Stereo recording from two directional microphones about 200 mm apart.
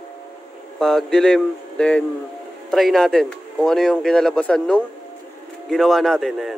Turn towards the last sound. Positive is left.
turn(degrees=0)  # may be behind; listen again after turning